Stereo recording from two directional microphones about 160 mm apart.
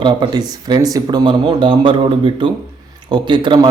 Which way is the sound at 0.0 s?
30° right (ahead or behind).